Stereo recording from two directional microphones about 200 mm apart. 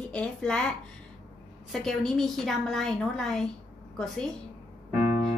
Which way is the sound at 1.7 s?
Centre (ahead or behind).